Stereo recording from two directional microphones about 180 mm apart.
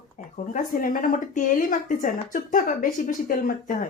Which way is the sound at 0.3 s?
45° left (ahead or behind).